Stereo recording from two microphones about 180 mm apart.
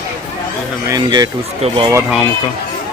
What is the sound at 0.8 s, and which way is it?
Speech, 20° right (ahead or behind).